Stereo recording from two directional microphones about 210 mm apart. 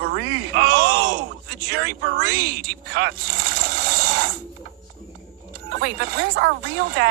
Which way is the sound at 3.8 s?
50° right (ahead or behind).